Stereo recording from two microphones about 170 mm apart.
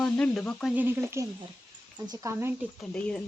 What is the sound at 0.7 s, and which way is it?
Speech, 10° right (ahead or behind).